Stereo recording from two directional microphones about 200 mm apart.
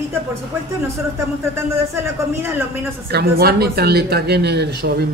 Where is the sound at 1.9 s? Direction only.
10° right (ahead or behind).